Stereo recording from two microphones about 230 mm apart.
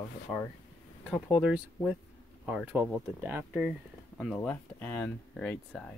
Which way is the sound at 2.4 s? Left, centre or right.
Centre.